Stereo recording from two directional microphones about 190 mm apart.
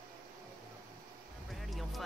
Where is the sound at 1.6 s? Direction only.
Centre (ahead or behind).